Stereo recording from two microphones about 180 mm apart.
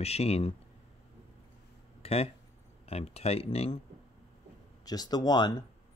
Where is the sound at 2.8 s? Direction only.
35° left (ahead or behind).